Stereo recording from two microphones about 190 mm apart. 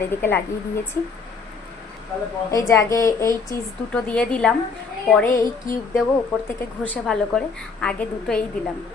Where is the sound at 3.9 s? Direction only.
5° left (ahead or behind).